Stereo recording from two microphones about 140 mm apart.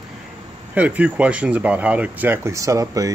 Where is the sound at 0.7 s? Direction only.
10° right (ahead or behind).